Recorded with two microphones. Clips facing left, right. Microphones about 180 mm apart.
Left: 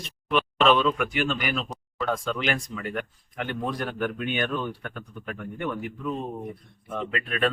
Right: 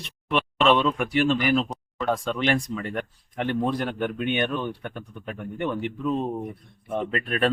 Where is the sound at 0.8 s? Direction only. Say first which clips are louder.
Right 2 dB; 30° right (ahead or behind).